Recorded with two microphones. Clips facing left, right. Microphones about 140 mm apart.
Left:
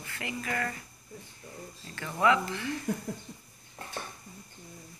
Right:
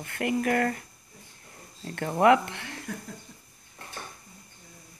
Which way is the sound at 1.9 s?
55° right (ahead or behind).